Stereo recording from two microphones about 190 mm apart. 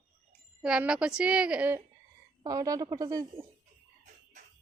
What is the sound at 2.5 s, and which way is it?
Speech, 20° right (ahead or behind).